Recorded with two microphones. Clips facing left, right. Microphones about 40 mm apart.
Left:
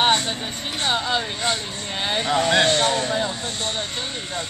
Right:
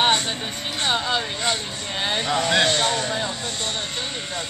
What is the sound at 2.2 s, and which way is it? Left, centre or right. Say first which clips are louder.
A man's voice: left 2 dB; left.